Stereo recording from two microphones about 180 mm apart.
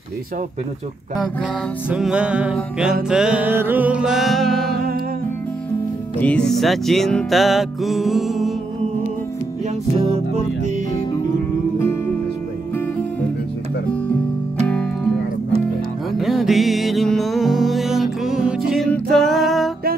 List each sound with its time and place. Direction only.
1.9 s music: 5° right (ahead or behind)
4.6 s music: 60° right (ahead or behind)
6.2 s music: 5° left (ahead or behind)
10.1 s music: 35° right (ahead or behind)
14.7 s music: 5° left (ahead or behind)
16.2 s music: centre (ahead or behind)
19.1 s a sound: centre (ahead or behind)